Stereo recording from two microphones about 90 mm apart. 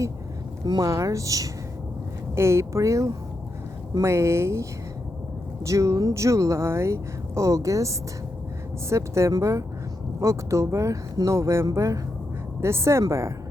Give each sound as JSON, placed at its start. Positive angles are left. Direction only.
{"t": 0.6, "sound": "speech", "side_deg": -50}
{"t": 0.9, "sound": "speech", "side_deg": -35}